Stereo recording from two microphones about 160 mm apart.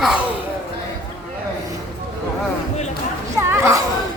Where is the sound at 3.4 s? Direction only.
15° right (ahead or behind).